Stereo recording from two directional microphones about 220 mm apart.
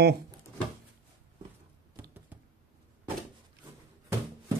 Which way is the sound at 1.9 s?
10° right (ahead or behind).